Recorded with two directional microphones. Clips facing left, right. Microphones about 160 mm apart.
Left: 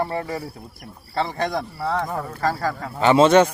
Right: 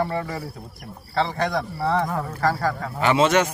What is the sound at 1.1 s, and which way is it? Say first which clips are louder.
Speech: right 1 dB; 20° left (ahead or behind).